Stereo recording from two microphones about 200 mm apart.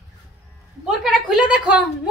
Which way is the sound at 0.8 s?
Centre (ahead or behind).